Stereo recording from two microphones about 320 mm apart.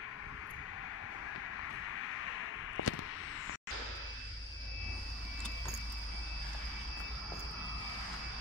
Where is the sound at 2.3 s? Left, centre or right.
Left.